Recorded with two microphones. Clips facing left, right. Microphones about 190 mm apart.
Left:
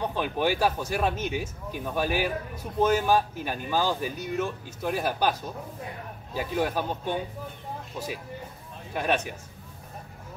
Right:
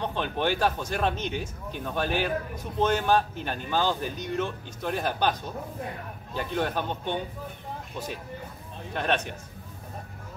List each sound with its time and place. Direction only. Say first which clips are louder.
0.0 s speech: left 1 dB; 10° left (ahead or behind)
8.9 s speech: left 1 dB; 10° left (ahead or behind)